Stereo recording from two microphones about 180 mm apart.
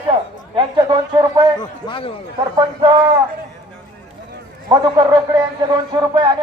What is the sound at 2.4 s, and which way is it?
Speech, 25° right (ahead or behind).